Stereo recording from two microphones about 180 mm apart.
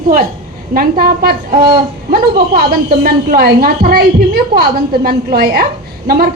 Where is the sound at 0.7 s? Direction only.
55° right (ahead or behind).